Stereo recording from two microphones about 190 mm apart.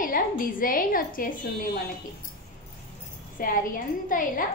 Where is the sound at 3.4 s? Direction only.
45° left (ahead or behind).